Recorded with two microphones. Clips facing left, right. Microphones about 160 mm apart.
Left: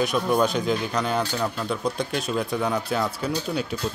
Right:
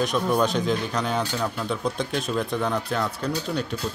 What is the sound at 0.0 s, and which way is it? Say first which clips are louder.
Speech: left 1 dB; 5° left (ahead or behind).